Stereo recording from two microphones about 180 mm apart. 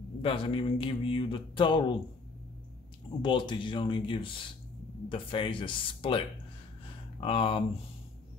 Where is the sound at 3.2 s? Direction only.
25° left (ahead or behind).